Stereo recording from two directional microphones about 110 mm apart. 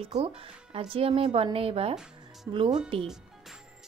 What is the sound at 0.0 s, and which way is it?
Speech, 75° right (ahead or behind).